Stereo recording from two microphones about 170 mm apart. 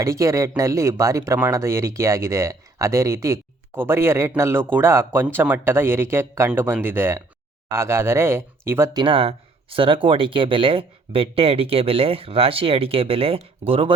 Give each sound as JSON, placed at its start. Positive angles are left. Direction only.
{"t": 0.0, "sound": "speech", "side_deg": -20}